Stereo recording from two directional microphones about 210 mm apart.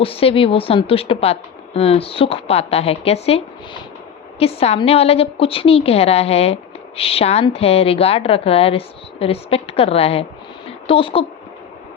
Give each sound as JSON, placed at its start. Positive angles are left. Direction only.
{"t": 0.0, "sound": "a woman's voice", "side_deg": 25}